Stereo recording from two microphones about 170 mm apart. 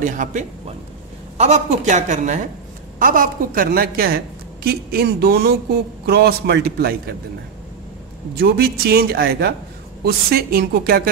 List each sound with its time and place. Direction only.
0.0 s a woman's voice: 50° right (ahead or behind); by 7.0 s 65° right (ahead or behind)
8.4 s a woman's voice: 65° right (ahead or behind)